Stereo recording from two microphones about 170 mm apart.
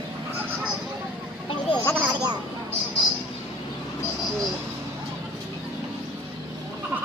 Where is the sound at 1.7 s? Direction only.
30° left (ahead or behind).